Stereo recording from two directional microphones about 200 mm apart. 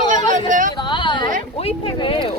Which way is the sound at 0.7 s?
25° left (ahead or behind).